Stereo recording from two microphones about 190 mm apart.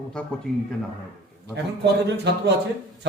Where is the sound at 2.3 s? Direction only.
65° right (ahead or behind).